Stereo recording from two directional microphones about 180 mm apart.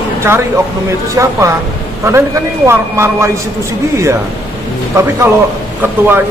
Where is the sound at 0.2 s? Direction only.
15° right (ahead or behind).